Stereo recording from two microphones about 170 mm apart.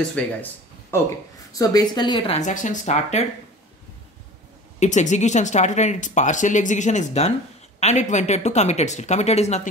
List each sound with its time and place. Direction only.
0.2 s speech: 5° left (ahead or behind)
1.5 s a woman's voice: 20° left (ahead or behind)
2.3 s speech: 45° left (ahead or behind)
4.7 s speech: 45° left (ahead or behind)